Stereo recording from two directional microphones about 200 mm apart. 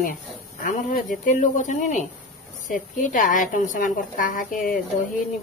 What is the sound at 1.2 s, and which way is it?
A woman's voice, 40° left (ahead or behind).